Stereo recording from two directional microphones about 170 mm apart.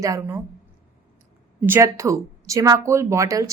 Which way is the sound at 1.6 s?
15° right (ahead or behind).